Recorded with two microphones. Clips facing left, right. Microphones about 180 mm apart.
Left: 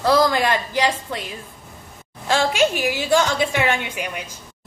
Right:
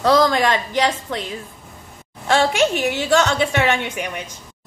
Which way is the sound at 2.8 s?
10° left (ahead or behind).